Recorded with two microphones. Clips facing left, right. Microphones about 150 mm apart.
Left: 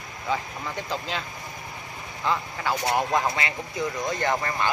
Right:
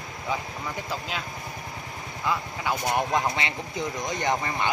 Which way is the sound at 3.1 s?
25° right (ahead or behind).